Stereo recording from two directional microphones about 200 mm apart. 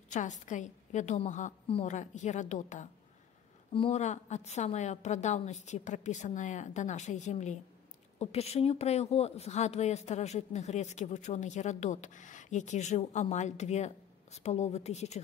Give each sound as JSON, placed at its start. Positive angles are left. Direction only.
{"t": 0.1, "sound": "a woman's voice", "side_deg": 40}